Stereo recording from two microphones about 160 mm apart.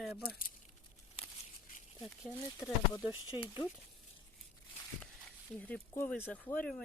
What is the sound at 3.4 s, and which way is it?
Speech, 30° left (ahead or behind).